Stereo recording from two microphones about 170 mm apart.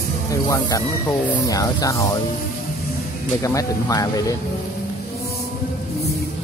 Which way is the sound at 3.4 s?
20° left (ahead or behind).